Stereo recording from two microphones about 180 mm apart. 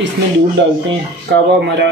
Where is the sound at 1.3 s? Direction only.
70° right (ahead or behind).